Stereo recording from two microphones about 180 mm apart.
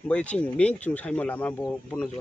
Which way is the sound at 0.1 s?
5° left (ahead or behind).